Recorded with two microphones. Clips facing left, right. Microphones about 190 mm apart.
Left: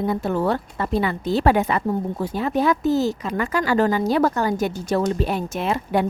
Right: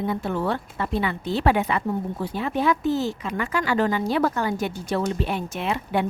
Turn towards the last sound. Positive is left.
turn(degrees=40)  # may be behind; listen again after turning